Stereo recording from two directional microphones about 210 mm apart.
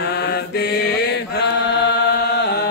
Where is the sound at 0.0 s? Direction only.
50° left (ahead or behind).